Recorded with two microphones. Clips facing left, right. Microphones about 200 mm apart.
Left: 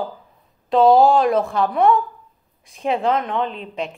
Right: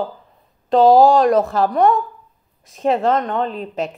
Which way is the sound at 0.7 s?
Centre (ahead or behind).